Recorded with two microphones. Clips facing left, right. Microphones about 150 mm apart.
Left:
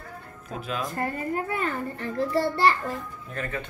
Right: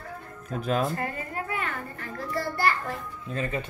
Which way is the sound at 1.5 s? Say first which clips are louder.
Left 4 dB; 30° left (ahead or behind).